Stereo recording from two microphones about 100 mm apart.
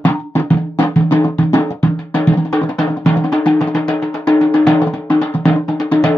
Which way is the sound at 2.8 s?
10° left (ahead or behind).